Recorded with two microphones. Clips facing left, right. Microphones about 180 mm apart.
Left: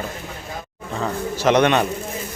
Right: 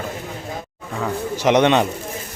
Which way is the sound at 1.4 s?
20° right (ahead or behind).